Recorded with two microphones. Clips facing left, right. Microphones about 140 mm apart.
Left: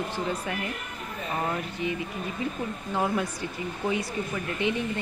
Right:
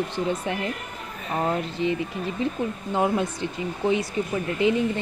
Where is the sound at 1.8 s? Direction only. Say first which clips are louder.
Right 5 dB; 30° right (ahead or behind).